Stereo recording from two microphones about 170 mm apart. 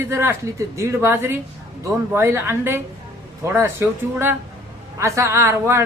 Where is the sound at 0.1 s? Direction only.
15° right (ahead or behind).